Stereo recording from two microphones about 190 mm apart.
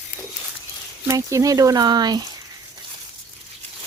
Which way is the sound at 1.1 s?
15° right (ahead or behind).